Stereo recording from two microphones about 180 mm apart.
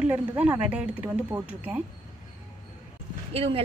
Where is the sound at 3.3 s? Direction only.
30° right (ahead or behind).